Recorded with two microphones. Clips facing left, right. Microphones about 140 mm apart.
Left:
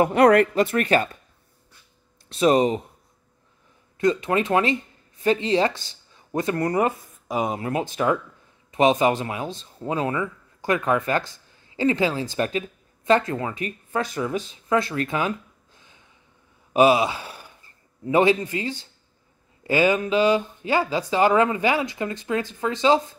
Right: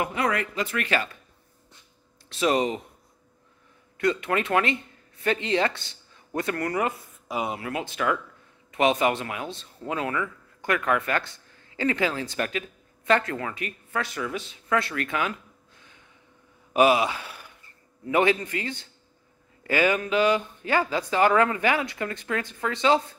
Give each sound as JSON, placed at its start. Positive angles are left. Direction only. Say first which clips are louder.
{"t": 0.1, "sound": "speech", "louder": "left 11 dB", "side_deg": 60}
{"t": 2.3, "sound": "speech", "louder": "left 5 dB", "side_deg": 35}
{"t": 4.0, "sound": "speech", "louder": "left 4 dB", "side_deg": 30}
{"t": 7.0, "sound": "speech", "louder": "left 4 dB", "side_deg": 40}
{"t": 9.2, "sound": "speech", "louder": "left 4 dB", "side_deg": 30}
{"t": 14.9, "sound": "speech", "louder": "left 4 dB", "side_deg": 30}
{"t": 16.7, "sound": "a man's voice", "louder": "left 3 dB", "side_deg": 25}